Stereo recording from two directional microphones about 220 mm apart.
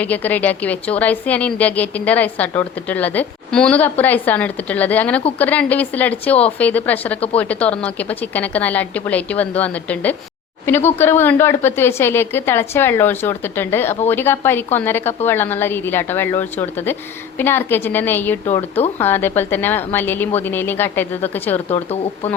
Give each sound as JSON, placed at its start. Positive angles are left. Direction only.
{"t": 0.0, "sound": "a woman's voice", "side_deg": 5}
{"t": 21.7, "sound": "speech", "side_deg": 30}